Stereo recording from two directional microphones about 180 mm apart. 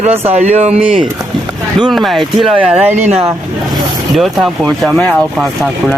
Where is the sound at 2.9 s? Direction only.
40° right (ahead or behind).